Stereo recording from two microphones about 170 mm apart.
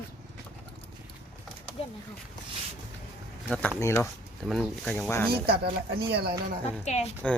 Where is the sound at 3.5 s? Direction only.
10° left (ahead or behind).